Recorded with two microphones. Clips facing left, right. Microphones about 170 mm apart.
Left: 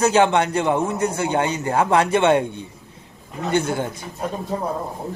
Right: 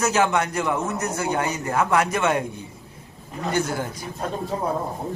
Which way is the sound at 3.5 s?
25° left (ahead or behind).